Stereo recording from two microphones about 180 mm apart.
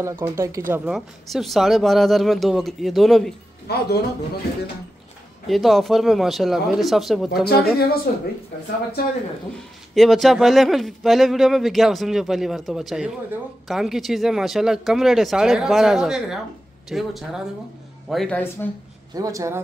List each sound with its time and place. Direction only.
0.0 s speech: 15° right (ahead or behind)
0.9 s speech: centre (ahead or behind)
3.6 s speech: 60° left (ahead or behind)
5.5 s speech: centre (ahead or behind)
7.4 s speech: 60° left (ahead or behind)
9.9 s speech: centre (ahead or behind)
19.1 s speech: 20° right (ahead or behind)